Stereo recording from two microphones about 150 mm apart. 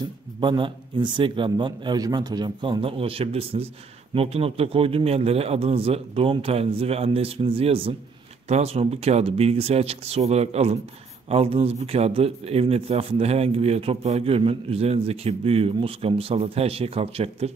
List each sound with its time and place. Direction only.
0.4 s speech: 35° right (ahead or behind)